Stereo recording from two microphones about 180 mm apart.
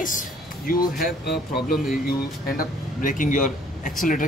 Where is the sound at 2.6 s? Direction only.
50° left (ahead or behind).